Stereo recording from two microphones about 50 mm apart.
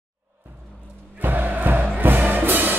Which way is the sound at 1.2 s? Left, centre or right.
Right.